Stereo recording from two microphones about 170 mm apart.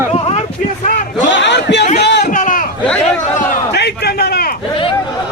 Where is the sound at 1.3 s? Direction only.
90° left.